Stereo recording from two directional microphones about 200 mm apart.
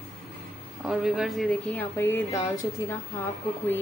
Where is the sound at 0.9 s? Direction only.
Centre (ahead or behind).